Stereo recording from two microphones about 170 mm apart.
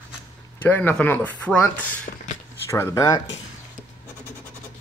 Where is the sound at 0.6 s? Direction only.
10° left (ahead or behind).